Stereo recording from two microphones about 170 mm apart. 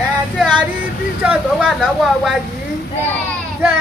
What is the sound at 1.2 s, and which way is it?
Speech, 5° right (ahead or behind).